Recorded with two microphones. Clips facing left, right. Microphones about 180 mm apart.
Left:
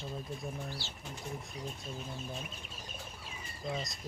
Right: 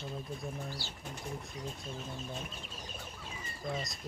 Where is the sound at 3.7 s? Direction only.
Centre (ahead or behind).